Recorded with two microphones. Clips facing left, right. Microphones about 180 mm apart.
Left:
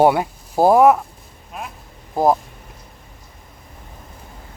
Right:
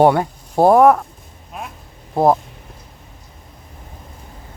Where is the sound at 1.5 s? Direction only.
Centre (ahead or behind).